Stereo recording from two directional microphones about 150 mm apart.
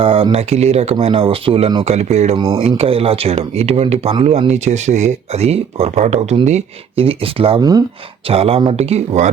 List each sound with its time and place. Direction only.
0.0 s speech: 40° right (ahead or behind)